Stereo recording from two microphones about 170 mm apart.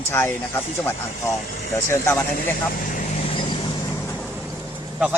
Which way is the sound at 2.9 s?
50° left (ahead or behind).